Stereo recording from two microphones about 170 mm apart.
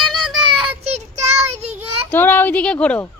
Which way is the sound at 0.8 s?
40° right (ahead or behind).